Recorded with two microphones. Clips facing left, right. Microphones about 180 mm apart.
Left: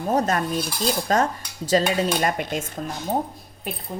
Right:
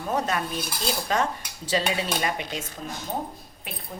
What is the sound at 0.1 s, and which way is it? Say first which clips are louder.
Speech: left 5 dB; 40° left (ahead or behind).